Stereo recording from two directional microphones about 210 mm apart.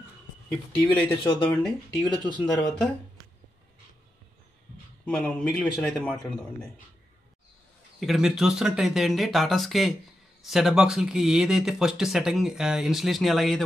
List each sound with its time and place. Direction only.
0.7 s speech: 10° left (ahead or behind)
2.0 s speech: 20° left (ahead or behind)
5.0 s speech: 5° left (ahead or behind)
8.0 s speech: centre (ahead or behind)